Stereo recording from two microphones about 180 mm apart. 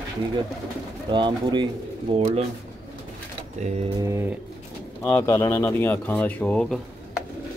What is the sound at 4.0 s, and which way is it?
Speech, 15° right (ahead or behind).